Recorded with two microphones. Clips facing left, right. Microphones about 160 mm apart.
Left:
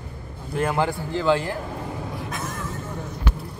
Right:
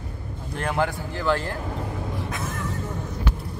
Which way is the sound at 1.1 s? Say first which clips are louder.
Left 3 dB; 15° left (ahead or behind).